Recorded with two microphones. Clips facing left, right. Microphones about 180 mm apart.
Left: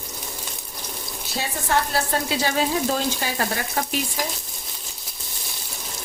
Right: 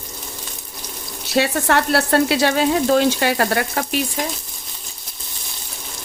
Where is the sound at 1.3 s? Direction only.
75° right (ahead or behind).